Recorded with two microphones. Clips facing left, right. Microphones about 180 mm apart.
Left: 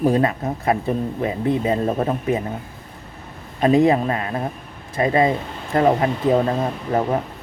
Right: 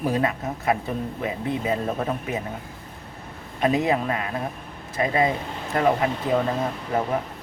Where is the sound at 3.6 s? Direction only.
30° left (ahead or behind).